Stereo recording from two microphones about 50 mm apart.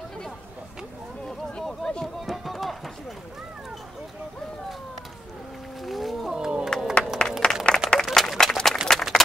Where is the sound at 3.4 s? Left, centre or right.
Centre.